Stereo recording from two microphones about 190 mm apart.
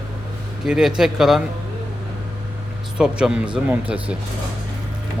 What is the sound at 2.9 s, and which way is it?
A man's voice, 5° right (ahead or behind).